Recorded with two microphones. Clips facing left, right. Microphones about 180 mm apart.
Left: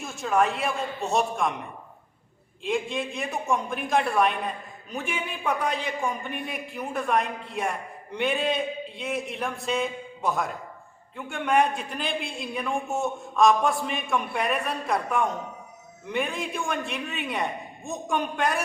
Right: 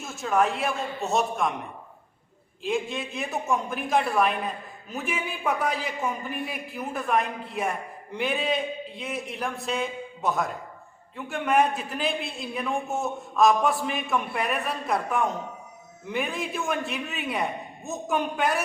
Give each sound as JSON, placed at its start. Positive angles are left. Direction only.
{"t": 0.0, "sound": "a man's voice", "side_deg": 0}
{"t": 2.6, "sound": "a man's voice", "side_deg": 0}